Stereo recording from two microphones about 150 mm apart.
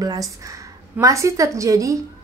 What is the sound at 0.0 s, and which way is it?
A woman's voice, 25° right (ahead or behind).